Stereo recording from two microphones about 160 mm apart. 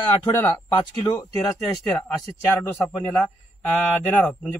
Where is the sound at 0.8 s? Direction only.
25° left (ahead or behind).